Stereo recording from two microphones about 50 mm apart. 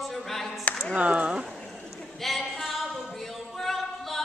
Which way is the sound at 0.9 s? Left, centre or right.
Right.